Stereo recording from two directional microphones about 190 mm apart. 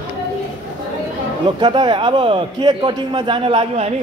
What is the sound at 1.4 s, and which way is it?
A man's voice, 25° right (ahead or behind).